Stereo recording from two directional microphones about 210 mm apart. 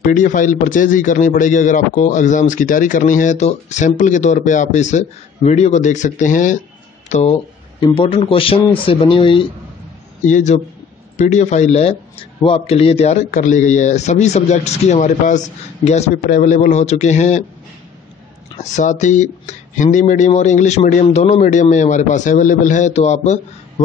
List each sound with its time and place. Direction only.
0.0 s a man's voice: 40° left (ahead or behind)
10.2 s a man's voice: 35° left (ahead or behind)
18.6 s a man's voice: 35° left (ahead or behind)